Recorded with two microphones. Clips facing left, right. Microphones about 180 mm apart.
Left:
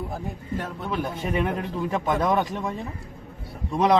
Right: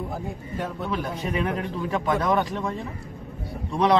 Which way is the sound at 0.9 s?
25° left (ahead or behind).